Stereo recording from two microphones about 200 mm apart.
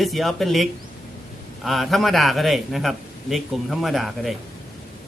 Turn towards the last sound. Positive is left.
turn(degrees=0)  # may be behind; listen again after turning